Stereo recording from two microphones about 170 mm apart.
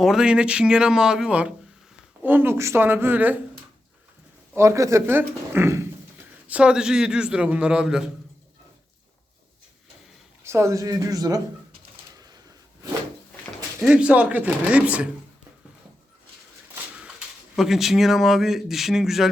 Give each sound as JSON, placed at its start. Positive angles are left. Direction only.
{"t": 0.0, "sound": "speech", "side_deg": -5}
{"t": 4.5, "sound": "speech", "side_deg": -15}
{"t": 10.4, "sound": "speech", "side_deg": -15}
{"t": 13.8, "sound": "speech", "side_deg": -5}
{"t": 17.0, "sound": "speech", "side_deg": -5}